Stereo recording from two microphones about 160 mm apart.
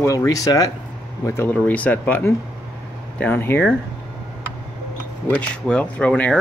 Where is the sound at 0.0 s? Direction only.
20° left (ahead or behind).